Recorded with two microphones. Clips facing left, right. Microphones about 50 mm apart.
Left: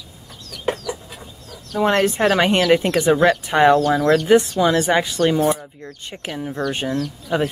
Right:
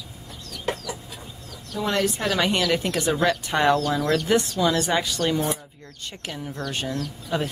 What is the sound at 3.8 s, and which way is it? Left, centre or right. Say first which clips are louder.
Speech: left 7 dB; left.